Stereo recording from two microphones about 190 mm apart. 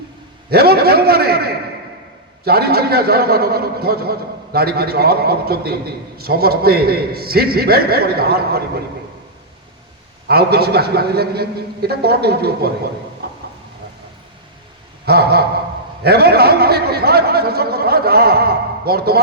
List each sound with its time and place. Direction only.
0.5 s a man's voice: 55° right (ahead or behind)
10.2 s a man's voice: 55° right (ahead or behind)
15.0 s a man's voice: 55° right (ahead or behind)